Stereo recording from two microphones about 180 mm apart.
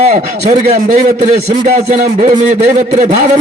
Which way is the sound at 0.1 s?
40° right (ahead or behind).